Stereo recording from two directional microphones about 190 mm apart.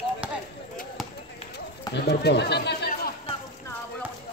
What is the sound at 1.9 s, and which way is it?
Speech, 60° left (ahead or behind).